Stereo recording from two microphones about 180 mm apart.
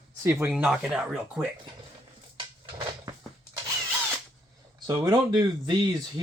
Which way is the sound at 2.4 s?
25° right (ahead or behind).